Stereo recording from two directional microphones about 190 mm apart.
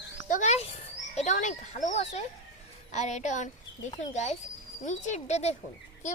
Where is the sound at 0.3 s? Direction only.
40° left (ahead or behind).